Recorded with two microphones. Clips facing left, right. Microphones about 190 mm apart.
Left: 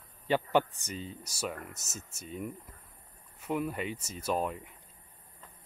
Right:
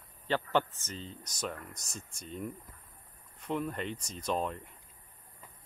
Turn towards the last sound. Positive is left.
turn(degrees=5)  # may be behind; listen again after turning